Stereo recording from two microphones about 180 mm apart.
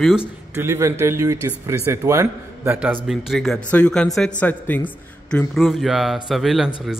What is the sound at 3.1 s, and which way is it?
A man's voice, centre (ahead or behind).